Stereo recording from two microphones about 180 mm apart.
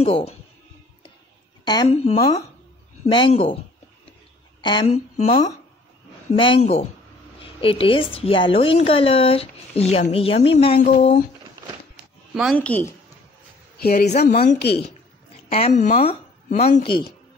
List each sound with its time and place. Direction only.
0.0 s a woman's voice: 35° left (ahead or behind)
1.9 s a woman's voice: 35° left (ahead or behind)
4.6 s a woman's voice: 25° left (ahead or behind)
10.8 s speech: 40° left (ahead or behind)
12.5 s a woman's voice: 10° left (ahead or behind)
13.7 s a woman's voice: 55° left (ahead or behind)
15.5 s a woman's voice: 35° left (ahead or behind)